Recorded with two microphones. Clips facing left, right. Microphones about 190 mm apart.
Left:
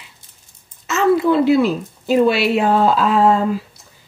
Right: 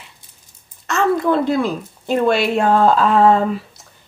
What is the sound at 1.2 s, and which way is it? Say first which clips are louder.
Speech: left 3 dB; 50° right (ahead or behind).